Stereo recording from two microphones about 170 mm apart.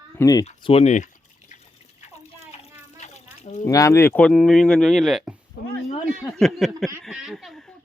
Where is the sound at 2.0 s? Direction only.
40° left (ahead or behind).